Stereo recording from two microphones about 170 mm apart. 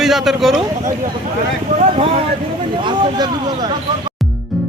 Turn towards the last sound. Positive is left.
turn(degrees=-25)  # may be behind; listen again after turning